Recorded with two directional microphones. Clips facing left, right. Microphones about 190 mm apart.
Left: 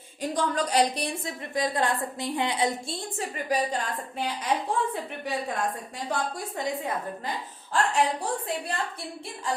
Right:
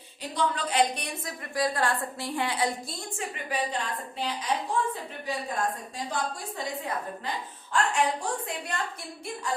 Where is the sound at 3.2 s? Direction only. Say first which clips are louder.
Left 4 dB; 40° left (ahead or behind).